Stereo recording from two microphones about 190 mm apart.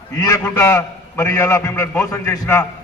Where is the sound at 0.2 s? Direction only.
15° left (ahead or behind).